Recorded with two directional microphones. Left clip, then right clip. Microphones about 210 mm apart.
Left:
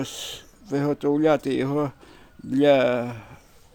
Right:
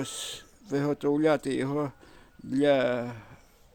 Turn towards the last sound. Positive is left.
turn(degrees=0)  # may be behind; listen again after turning